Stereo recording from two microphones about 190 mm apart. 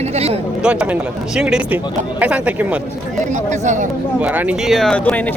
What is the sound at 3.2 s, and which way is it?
Speech, 40° right (ahead or behind).